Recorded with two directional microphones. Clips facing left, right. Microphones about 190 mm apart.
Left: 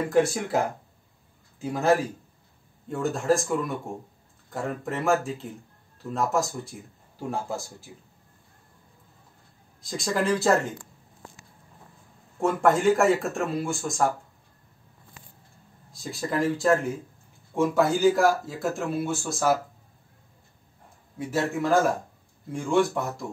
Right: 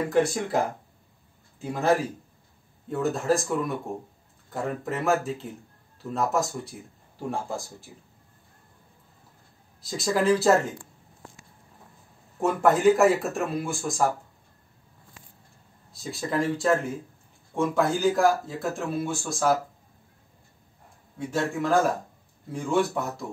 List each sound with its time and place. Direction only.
0.1 s speech: centre (ahead or behind)
9.8 s speech: 5° right (ahead or behind)
12.4 s speech: centre (ahead or behind)
15.9 s speech: centre (ahead or behind)
21.3 s speech: 5° left (ahead or behind)